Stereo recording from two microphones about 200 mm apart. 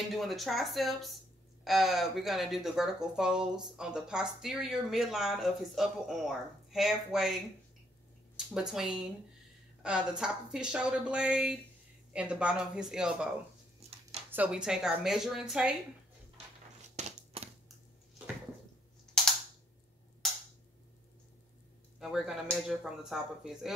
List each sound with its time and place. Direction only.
0.1 s speech: centre (ahead or behind)
8.5 s speech: 5° right (ahead or behind)
14.3 s speech: 5° right (ahead or behind)
16.9 s a sound: 30° right (ahead or behind)
19.1 s cap gun: centre (ahead or behind)
22.0 s speech: centre (ahead or behind)